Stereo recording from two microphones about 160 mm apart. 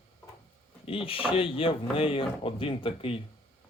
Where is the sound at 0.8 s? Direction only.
35° left (ahead or behind).